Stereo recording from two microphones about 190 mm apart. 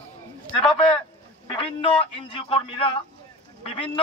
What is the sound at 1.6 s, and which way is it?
Speech, 30° left (ahead or behind).